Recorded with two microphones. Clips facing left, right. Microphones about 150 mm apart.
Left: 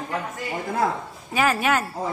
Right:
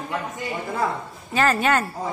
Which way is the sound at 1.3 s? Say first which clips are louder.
Right 1 dB; 5° left (ahead or behind).